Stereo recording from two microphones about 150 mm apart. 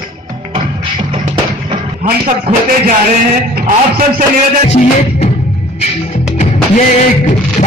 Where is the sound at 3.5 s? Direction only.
65° right (ahead or behind).